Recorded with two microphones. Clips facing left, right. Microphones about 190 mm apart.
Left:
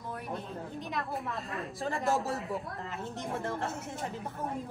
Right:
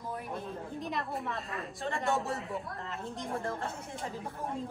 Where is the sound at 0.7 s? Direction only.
Centre (ahead or behind).